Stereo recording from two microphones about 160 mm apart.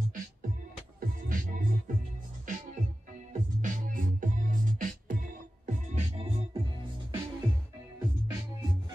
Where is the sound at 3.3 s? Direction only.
55° right (ahead or behind); by 6.9 s 30° right (ahead or behind).